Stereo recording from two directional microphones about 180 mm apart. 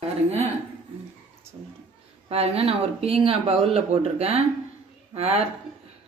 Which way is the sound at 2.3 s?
35° right (ahead or behind).